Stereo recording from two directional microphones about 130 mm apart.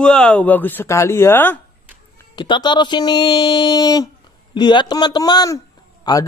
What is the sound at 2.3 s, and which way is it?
A man's voice, 35° left (ahead or behind).